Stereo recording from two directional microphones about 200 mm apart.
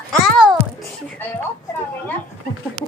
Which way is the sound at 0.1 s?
Centre (ahead or behind).